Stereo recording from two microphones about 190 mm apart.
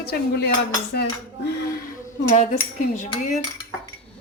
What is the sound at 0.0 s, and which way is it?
Cutlery, 55° left (ahead or behind).